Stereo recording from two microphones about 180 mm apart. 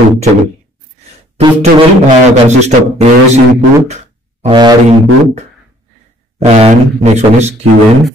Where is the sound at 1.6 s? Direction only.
40° right (ahead or behind).